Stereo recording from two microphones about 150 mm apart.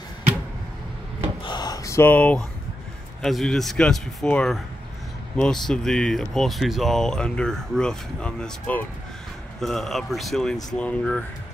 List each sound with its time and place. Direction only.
1.4 s gasp: 30° left (ahead or behind); by 2.4 s 10° left (ahead or behind)
3.2 s speech: centre (ahead or behind)